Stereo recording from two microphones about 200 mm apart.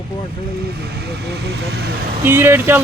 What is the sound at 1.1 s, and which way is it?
Vehicle, 55° right (ahead or behind).